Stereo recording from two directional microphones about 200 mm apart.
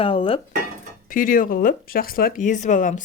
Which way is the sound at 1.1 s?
45° left (ahead or behind).